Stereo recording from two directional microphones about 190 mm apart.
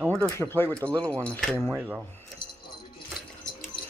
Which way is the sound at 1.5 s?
10° right (ahead or behind).